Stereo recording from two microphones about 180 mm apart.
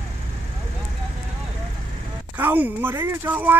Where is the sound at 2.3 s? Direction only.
10° right (ahead or behind).